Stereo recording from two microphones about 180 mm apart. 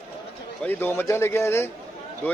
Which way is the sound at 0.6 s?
10° left (ahead or behind).